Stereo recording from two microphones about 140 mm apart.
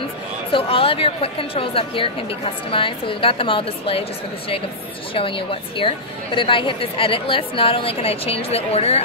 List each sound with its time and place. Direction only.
0.5 s a woman's voice: 40° left (ahead or behind)
5.1 s a woman's voice: 40° left (ahead or behind)